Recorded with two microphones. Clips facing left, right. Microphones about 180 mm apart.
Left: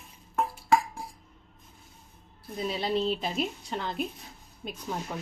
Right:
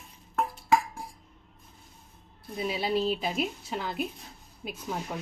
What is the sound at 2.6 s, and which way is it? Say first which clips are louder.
A woman's voice: even; 5° right (ahead or behind).